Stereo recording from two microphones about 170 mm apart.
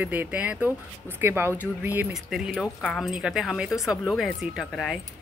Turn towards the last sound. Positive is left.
turn(degrees=0)  # may be behind; listen again after turning